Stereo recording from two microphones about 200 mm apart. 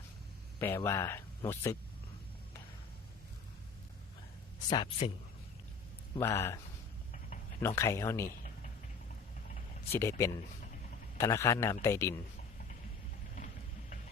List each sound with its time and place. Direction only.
0.6 s speech: 10° left (ahead or behind)
4.7 s speech: 25° left (ahead or behind)
6.1 s speech: 10° left (ahead or behind)
7.8 s speech: 15° left (ahead or behind)
9.9 s speech: 10° left (ahead or behind)